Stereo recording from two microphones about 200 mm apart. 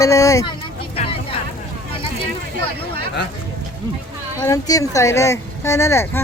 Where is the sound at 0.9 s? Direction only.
30° left (ahead or behind).